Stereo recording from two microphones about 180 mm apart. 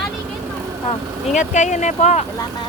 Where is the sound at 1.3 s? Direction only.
40° left (ahead or behind).